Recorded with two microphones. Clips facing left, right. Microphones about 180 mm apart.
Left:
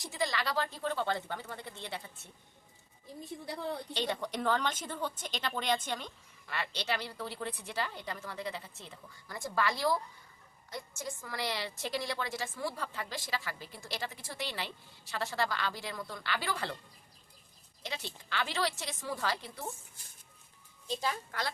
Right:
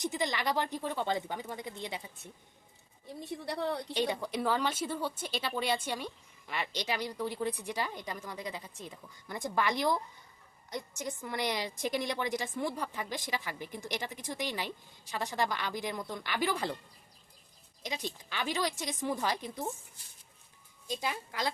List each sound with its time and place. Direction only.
0.0 s speech: 20° right (ahead or behind)
3.2 s speech: 70° right (ahead or behind)
3.9 s speech: 10° right (ahead or behind)
17.8 s speech: 15° right (ahead or behind)
20.8 s speech: 15° right (ahead or behind)